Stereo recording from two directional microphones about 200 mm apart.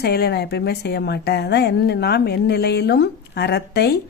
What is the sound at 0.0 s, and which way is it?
A woman's voice, 55° left (ahead or behind).